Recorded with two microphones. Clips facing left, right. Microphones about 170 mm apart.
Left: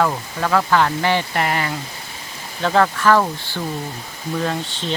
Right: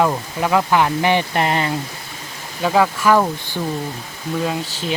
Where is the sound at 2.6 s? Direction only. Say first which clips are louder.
Even; 10° right (ahead or behind).